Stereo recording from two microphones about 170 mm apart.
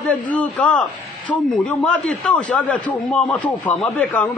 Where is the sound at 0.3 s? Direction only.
10° left (ahead or behind).